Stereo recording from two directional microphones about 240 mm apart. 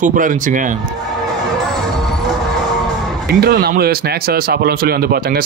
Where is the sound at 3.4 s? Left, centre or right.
Right.